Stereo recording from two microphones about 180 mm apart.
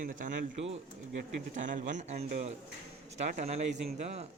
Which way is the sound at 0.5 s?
35° right (ahead or behind).